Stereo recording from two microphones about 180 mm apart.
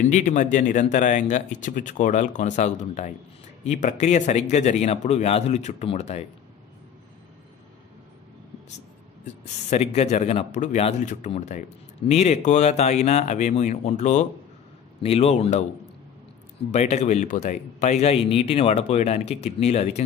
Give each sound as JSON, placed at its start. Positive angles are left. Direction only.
{"t": 0.1, "sound": "speech", "side_deg": 40}
{"t": 9.2, "sound": "speech", "side_deg": 40}
{"t": 16.7, "sound": "speech", "side_deg": 40}